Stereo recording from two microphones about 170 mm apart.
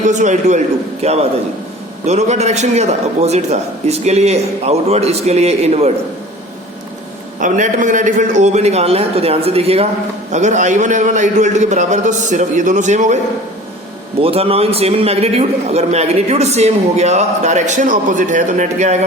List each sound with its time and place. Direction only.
0.1 s a man's voice: 45° right (ahead or behind)
7.3 s a man's voice: 50° right (ahead or behind)
14.2 s a man's voice: 35° right (ahead or behind)